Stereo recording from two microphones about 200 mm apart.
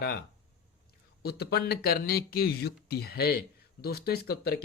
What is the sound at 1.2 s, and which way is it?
Speech, 50° left (ahead or behind).